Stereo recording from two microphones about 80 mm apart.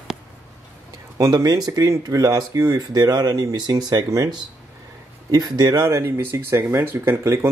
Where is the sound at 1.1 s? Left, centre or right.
Right.